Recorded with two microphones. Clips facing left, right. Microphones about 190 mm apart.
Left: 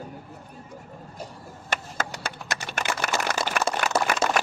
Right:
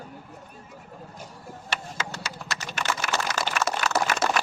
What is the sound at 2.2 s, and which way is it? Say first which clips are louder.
Typing: left 2 dB; 55° left (ahead or behind).